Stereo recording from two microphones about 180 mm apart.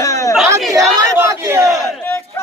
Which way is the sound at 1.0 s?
15° right (ahead or behind).